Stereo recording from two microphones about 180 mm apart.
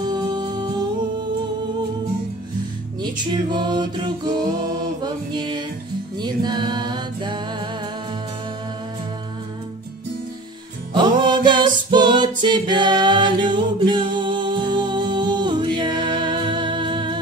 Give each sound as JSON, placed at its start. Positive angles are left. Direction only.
{"t": 0.0, "sound": "music", "side_deg": -25}
{"t": 3.5, "sound": "music", "side_deg": -25}
{"t": 10.9, "sound": "music", "side_deg": -25}